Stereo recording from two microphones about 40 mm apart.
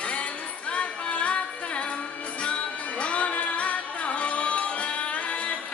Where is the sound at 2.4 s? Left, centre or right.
Left.